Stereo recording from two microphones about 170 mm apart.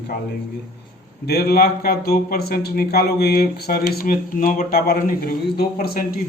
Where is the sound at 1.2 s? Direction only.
65° left (ahead or behind).